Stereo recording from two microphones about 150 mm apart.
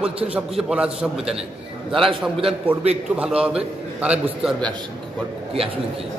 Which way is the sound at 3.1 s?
5° right (ahead or behind).